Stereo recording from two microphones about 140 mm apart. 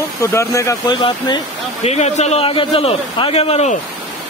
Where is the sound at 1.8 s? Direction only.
50° left (ahead or behind).